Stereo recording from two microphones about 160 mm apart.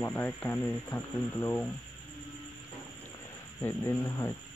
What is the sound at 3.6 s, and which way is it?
Speech, 15° left (ahead or behind).